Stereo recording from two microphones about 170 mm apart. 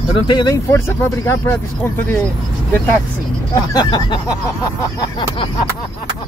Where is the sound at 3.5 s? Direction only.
25° left (ahead or behind).